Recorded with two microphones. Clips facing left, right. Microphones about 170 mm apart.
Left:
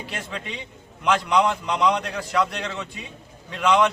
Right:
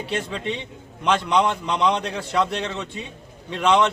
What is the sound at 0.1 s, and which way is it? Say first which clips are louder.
A man's voice: right 9 dB; 25° right (ahead or behind).